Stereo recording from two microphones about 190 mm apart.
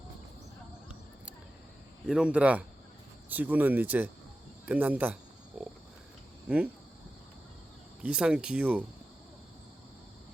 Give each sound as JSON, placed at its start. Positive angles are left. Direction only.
{"t": 2.0, "sound": "speech", "side_deg": -5}
{"t": 5.5, "sound": "pig", "side_deg": -5}
{"t": 6.5, "sound": "speech", "side_deg": -5}
{"t": 8.0, "sound": "speech", "side_deg": -5}